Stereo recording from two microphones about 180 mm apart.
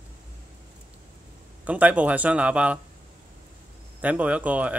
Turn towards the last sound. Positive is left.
turn(degrees=-10)  # may be behind; listen again after turning